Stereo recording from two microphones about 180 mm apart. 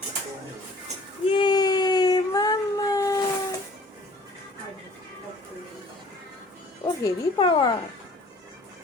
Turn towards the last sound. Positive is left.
turn(degrees=25)  # may be behind; listen again after turning